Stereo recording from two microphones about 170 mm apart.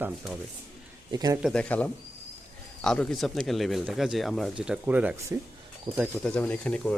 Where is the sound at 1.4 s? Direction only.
5° left (ahead or behind); by 5.4 s 10° right (ahead or behind).